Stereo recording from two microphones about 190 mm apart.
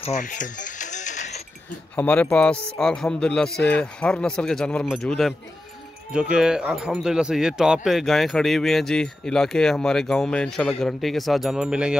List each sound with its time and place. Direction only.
0.0 s music: 40° left (ahead or behind)
2.0 s speech: 10° left (ahead or behind)